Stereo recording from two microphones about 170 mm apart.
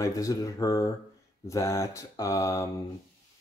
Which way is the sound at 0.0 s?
20° left (ahead or behind).